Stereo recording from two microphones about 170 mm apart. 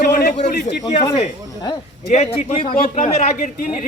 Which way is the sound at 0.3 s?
45° left (ahead or behind).